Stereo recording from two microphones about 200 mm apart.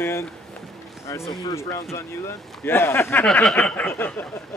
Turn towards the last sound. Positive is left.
turn(degrees=10)  # may be behind; listen again after turning